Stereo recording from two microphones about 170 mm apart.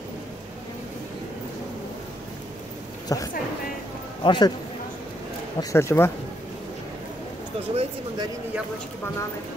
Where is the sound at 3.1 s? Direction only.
20° left (ahead or behind).